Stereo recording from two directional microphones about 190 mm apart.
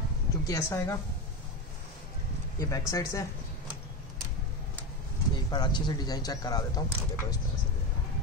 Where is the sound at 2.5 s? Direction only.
15° left (ahead or behind).